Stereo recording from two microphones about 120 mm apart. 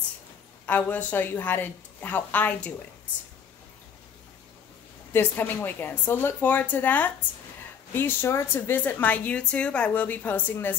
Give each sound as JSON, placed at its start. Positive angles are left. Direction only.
{"t": 0.7, "sound": "a woman's voice", "side_deg": 15}
{"t": 5.1, "sound": "a woman's voice", "side_deg": 15}